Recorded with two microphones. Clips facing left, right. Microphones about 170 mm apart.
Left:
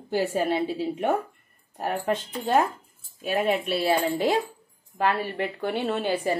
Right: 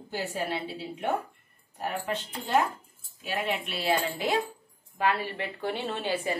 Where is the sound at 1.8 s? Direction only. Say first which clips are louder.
Left 5 dB; 45° left (ahead or behind).